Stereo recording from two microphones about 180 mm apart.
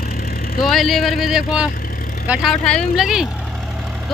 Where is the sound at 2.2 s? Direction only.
5° right (ahead or behind).